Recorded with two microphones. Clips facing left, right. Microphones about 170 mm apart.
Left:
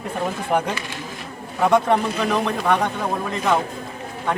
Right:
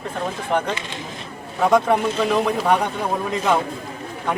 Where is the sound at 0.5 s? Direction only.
5° left (ahead or behind).